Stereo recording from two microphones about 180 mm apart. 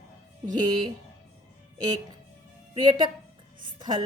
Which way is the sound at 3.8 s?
25° right (ahead or behind).